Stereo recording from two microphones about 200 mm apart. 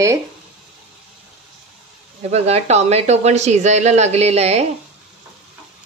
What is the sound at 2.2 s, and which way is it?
Speech, 30° right (ahead or behind).